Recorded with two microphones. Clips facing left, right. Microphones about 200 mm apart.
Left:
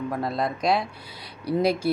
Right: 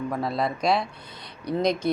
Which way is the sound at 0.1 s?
Centre (ahead or behind).